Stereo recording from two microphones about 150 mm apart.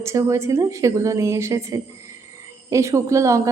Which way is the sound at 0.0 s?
20° right (ahead or behind).